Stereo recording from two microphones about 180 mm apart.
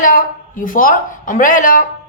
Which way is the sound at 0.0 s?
50° left (ahead or behind).